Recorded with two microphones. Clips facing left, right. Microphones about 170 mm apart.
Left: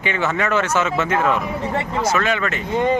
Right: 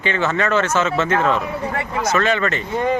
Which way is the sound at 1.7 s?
25° left (ahead or behind).